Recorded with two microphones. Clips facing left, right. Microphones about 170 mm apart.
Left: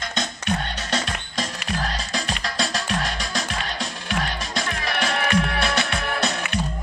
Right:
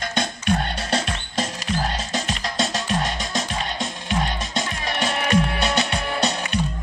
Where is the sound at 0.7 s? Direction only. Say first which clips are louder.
Right 2 dB; 30° right (ahead or behind).